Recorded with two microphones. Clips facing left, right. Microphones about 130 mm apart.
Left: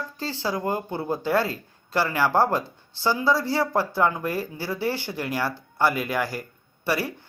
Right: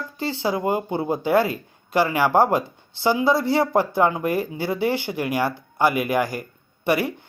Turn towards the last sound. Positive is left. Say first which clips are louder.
# right 5 dB
turn(degrees=-20)  # may be behind; listen again after turning